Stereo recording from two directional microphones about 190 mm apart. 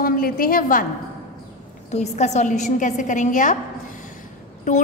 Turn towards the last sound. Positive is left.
turn(degrees=40)  # may be behind; listen again after turning